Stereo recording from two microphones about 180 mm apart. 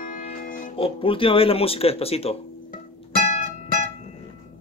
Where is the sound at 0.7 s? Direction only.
30° left (ahead or behind).